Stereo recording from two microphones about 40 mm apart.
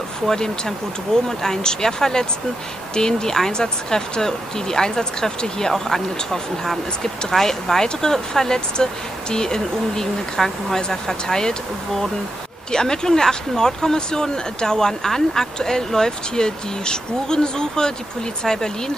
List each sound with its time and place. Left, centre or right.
0.3 s speech: centre
12.7 s speech: centre